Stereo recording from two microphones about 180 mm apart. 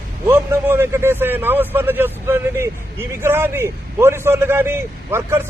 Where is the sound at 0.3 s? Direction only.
10° right (ahead or behind).